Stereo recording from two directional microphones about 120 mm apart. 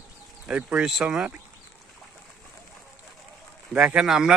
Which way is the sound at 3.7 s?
5° right (ahead or behind).